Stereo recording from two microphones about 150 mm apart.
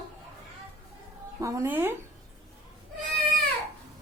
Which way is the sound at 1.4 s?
15° right (ahead or behind).